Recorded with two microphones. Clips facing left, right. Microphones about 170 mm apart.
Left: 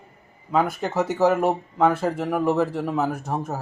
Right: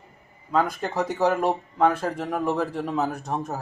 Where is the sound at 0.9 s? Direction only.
5° left (ahead or behind).